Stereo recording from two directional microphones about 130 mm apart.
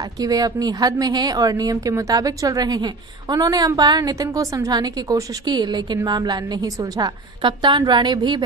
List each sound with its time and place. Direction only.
0.0 s a woman's voice: 30° right (ahead or behind)